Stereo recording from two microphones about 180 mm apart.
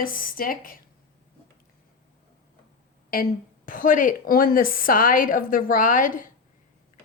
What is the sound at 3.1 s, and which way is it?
A woman's voice, 50° left (ahead or behind).